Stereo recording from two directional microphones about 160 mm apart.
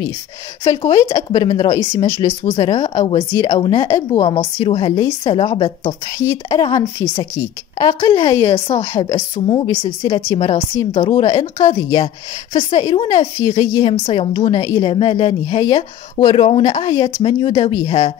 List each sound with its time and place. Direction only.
0.7 s a woman's voice: 25° left (ahead or behind)
6.1 s a woman's voice: 20° left (ahead or behind); by 18.1 s 40° left (ahead or behind)